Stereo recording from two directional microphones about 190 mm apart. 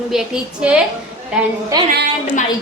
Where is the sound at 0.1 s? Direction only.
5° right (ahead or behind).